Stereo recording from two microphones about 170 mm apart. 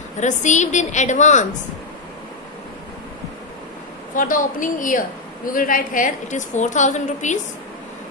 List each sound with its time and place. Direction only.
0.2 s a woman's voice: 45° left (ahead or behind)
4.1 s a woman's voice: 55° left (ahead or behind)